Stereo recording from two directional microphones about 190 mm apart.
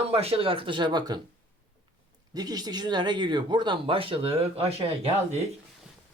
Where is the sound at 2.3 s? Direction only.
20° right (ahead or behind).